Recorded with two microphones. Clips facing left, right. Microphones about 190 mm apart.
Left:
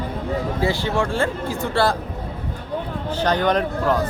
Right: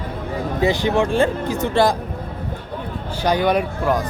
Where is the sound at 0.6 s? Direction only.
20° right (ahead or behind).